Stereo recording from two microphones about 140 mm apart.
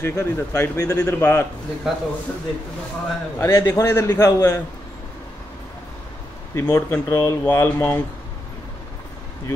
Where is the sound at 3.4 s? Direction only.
20° left (ahead or behind).